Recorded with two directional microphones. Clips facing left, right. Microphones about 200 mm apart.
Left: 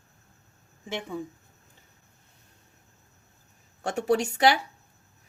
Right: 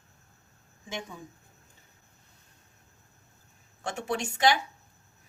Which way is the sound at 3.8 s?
40° left (ahead or behind).